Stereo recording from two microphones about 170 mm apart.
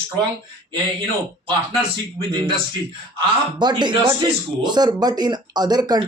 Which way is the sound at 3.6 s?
25° right (ahead or behind).